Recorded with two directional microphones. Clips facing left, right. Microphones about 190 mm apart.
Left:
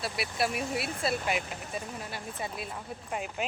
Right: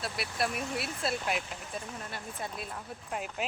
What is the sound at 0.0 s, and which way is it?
A woman's voice, 5° left (ahead or behind).